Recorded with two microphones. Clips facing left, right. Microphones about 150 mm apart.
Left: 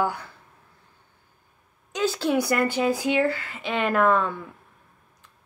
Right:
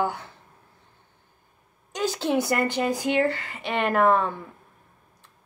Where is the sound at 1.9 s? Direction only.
15° right (ahead or behind).